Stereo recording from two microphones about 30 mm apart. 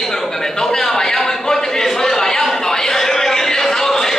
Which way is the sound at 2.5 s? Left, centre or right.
Centre.